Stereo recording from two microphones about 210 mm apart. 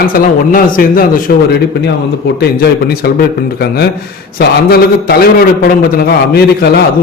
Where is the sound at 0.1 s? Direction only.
45° left (ahead or behind).